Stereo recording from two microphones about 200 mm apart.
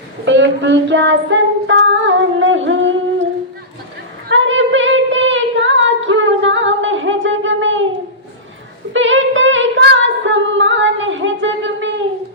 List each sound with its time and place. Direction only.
0.3 s female singing: 60° right (ahead or behind)
4.3 s a sound: 70° right (ahead or behind)
8.9 s singing: 70° right (ahead or behind)